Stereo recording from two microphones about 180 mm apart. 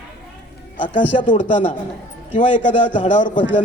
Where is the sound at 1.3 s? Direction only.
45° left (ahead or behind).